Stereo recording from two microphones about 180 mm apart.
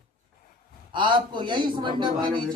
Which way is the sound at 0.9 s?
25° right (ahead or behind).